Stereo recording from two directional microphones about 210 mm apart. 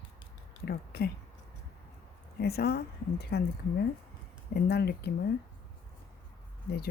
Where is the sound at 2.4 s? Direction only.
50° left (ahead or behind).